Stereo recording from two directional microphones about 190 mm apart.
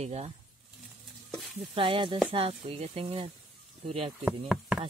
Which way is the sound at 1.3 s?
Centre (ahead or behind).